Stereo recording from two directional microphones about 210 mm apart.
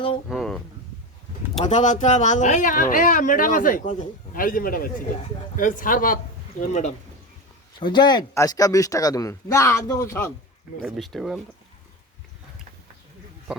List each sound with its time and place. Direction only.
0.3 s a sound: centre (ahead or behind)
1.6 s speech: 35° left (ahead or behind)
7.8 s speech: 20° left (ahead or behind)
10.8 s speech: centre (ahead or behind)
13.5 s speech: 5° right (ahead or behind)